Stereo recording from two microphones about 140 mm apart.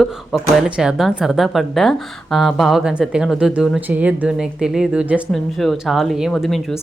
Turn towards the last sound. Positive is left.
turn(degrees=0)  # may be behind; listen again after turning